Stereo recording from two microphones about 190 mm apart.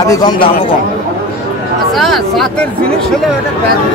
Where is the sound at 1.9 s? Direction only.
Centre (ahead or behind).